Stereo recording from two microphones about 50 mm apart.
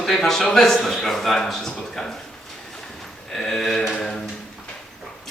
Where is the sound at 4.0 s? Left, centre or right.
Centre.